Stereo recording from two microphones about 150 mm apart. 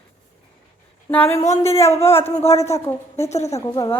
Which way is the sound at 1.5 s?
45° left (ahead or behind).